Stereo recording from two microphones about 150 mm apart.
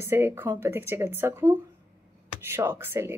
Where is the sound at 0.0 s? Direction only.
15° right (ahead or behind).